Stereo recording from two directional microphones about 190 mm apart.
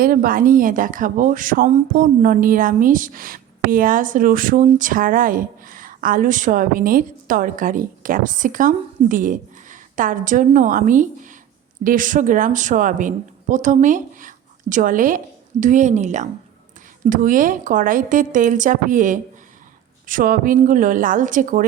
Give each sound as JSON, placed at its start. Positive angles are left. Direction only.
{"t": 0.0, "sound": "a woman's voice", "side_deg": -50}